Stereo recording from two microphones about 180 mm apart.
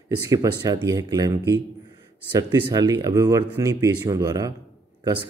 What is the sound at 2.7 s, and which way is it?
Speech, 20° right (ahead or behind).